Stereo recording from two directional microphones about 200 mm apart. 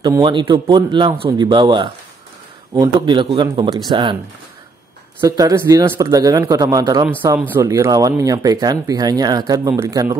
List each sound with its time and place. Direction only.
0.0 s speech: 20° right (ahead or behind)
5.2 s speech: 15° right (ahead or behind)